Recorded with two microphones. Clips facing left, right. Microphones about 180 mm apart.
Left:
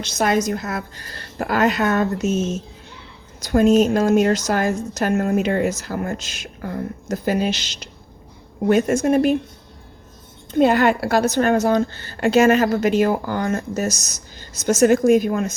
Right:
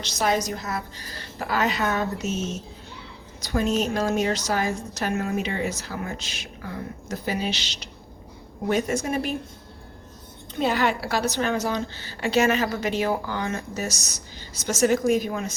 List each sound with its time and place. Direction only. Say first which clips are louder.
0.0 s a woman's voice: left 5 dB; 55° left (ahead or behind)
3.4 s a woman's voice: left 9 dB; 50° left (ahead or behind)
10.5 s a woman's voice: left 8 dB; 55° left (ahead or behind)